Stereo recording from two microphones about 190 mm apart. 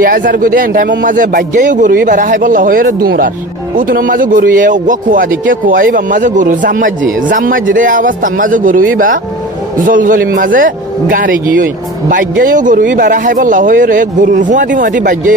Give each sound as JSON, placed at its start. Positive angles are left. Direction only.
{"t": 0.0, "sound": "a man's voice", "side_deg": -50}